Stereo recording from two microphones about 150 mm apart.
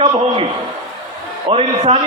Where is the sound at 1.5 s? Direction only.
40° right (ahead or behind).